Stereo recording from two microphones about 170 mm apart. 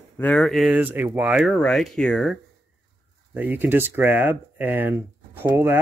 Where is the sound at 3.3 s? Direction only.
10° right (ahead or behind).